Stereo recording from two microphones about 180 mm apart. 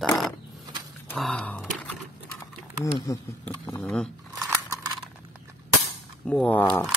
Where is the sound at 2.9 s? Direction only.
20° left (ahead or behind).